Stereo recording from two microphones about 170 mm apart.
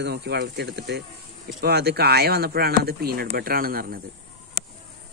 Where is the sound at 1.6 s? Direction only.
70° right (ahead or behind).